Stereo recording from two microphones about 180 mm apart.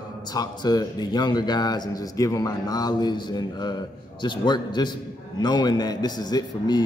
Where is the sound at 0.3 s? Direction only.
20° left (ahead or behind).